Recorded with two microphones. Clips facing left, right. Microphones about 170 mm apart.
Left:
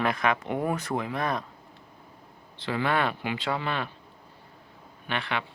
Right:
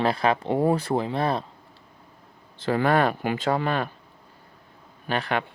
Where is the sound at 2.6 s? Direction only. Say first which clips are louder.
Right 6 dB; 45° right (ahead or behind).